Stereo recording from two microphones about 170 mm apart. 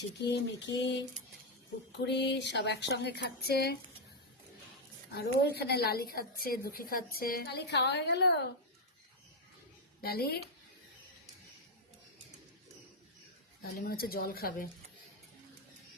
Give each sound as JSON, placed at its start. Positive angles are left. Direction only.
{"t": 0.3, "sound": "a sound", "side_deg": 90}
{"t": 2.0, "sound": "speech", "side_deg": 90}
{"t": 5.1, "sound": "a woman's voice", "side_deg": 70}
{"t": 10.0, "sound": "speech", "side_deg": 65}
{"t": 13.6, "sound": "speech", "side_deg": 60}